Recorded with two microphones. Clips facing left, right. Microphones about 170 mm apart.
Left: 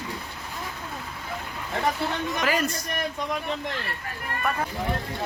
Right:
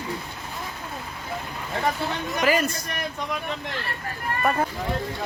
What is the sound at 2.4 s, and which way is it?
Speech, 5° right (ahead or behind).